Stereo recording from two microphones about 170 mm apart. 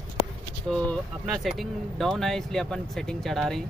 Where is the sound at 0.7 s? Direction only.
5° left (ahead or behind).